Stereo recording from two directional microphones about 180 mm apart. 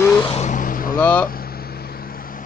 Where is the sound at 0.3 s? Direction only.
40° left (ahead or behind).